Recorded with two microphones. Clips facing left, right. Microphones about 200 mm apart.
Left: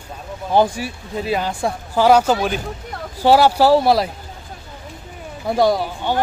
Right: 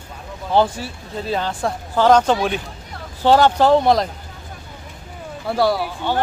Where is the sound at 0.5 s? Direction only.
15° left (ahead or behind).